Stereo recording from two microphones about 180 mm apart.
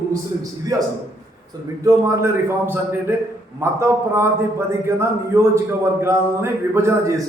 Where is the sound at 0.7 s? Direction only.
20° right (ahead or behind).